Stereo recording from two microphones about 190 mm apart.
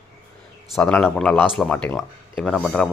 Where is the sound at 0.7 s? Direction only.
5° left (ahead or behind).